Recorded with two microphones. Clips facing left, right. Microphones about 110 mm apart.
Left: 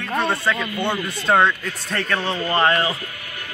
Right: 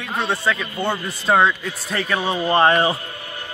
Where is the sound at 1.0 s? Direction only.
5° right (ahead or behind); by 3.0 s 25° right (ahead or behind).